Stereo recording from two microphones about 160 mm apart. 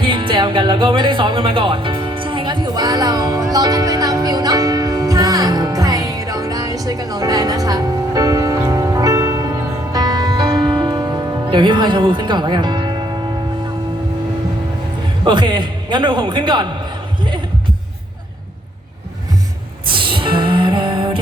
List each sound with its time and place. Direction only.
0.0 s music: 30° right (ahead or behind)
15.2 s a man's voice: 30° right (ahead or behind)
19.9 s music: 30° right (ahead or behind)